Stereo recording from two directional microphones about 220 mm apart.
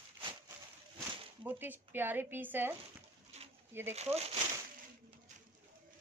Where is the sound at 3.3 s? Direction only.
30° right (ahead or behind).